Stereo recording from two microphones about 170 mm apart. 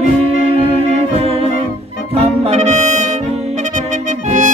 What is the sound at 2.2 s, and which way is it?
Brass instrument, 40° right (ahead or behind).